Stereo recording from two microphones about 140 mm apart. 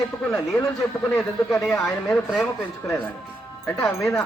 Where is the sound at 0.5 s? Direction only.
10° left (ahead or behind).